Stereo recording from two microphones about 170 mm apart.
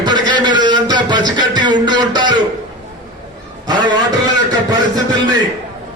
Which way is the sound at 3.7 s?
25° right (ahead or behind).